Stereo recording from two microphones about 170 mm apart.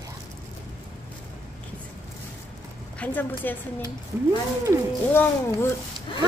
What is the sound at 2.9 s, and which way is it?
Speech, 10° left (ahead or behind).